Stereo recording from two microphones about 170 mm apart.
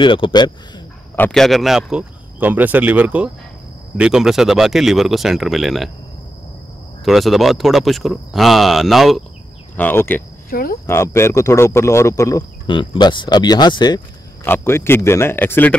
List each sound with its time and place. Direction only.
0.0 s speech: 30° left (ahead or behind)
1.1 s speech: 5° left (ahead or behind)
7.1 s speech: centre (ahead or behind)
9.8 s speech: 10° left (ahead or behind)
10.5 s speech: 60° left (ahead or behind)
10.9 s speech: 15° left (ahead or behind)
14.4 s speech: 15° left (ahead or behind)